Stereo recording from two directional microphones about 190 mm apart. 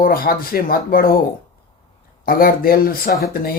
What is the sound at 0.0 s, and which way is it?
Speech, 50° left (ahead or behind).